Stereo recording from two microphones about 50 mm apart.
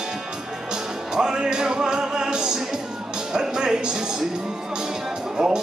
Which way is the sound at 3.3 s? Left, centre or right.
Centre.